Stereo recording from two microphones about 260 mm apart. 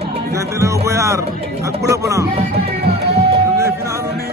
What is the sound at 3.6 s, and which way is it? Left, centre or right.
Music, centre.